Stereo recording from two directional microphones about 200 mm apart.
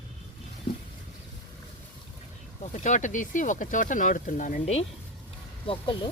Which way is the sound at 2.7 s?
35° left (ahead or behind).